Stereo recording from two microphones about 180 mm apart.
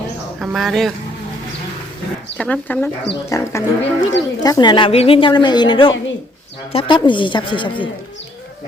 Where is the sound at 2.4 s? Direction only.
5° left (ahead or behind).